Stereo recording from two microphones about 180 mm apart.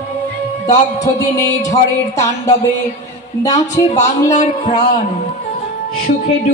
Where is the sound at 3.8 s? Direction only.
40° left (ahead or behind).